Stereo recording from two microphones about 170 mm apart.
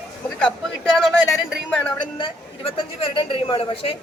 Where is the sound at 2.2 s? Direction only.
30° left (ahead or behind).